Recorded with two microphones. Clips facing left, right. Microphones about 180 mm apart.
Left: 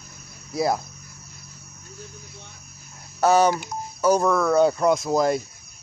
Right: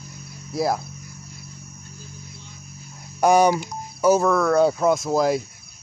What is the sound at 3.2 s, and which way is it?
Speech, 15° right (ahead or behind).